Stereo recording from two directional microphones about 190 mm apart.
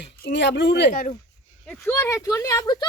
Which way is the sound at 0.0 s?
65° left (ahead or behind).